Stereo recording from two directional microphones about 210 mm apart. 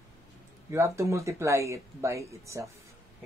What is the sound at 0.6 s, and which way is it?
Speech, 15° right (ahead or behind).